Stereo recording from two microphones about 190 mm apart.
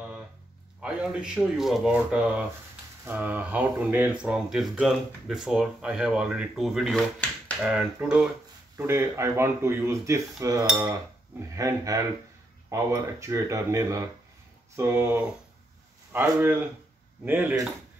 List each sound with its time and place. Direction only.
0.7 s speech: 5° right (ahead or behind)